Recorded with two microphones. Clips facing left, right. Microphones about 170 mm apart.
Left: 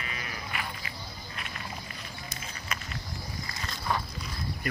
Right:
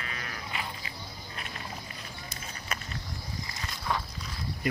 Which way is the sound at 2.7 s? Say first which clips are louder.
Right 1 dB; 35° right (ahead or behind).